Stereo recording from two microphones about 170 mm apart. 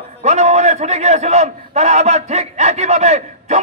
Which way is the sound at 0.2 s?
40° right (ahead or behind).